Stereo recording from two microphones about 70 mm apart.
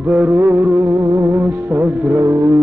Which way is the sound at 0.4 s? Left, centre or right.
Right.